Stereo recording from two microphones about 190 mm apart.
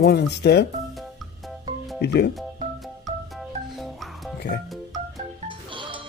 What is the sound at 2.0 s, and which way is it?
Speech, 60° left (ahead or behind).